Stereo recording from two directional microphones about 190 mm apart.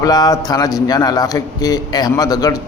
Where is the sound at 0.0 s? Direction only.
20° left (ahead or behind).